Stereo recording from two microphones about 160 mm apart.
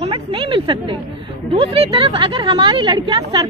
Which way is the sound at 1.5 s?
35° right (ahead or behind).